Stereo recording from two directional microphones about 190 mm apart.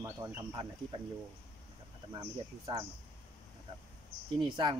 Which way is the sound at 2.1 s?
20° right (ahead or behind).